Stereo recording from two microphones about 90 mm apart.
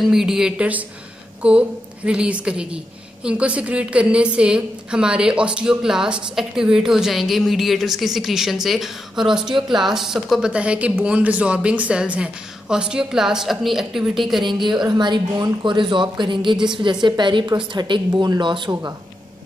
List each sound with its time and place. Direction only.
0.0 s a woman's voice: 5° right (ahead or behind)
14.4 s a woman's voice: 60° right (ahead or behind)